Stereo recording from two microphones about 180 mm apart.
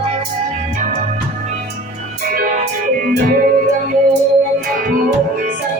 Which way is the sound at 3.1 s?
55° right (ahead or behind).